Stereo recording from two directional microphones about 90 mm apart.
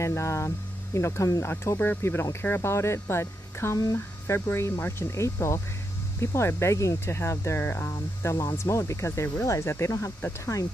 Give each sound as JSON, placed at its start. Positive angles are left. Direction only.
{"t": 0.0, "sound": "speech", "side_deg": 30}